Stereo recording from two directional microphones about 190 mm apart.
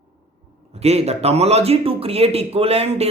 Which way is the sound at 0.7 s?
35° right (ahead or behind).